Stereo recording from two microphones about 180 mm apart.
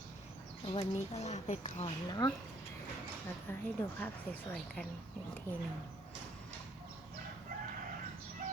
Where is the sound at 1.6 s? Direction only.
30° left (ahead or behind).